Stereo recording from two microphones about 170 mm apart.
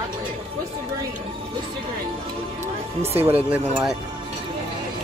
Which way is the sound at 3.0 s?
35° right (ahead or behind).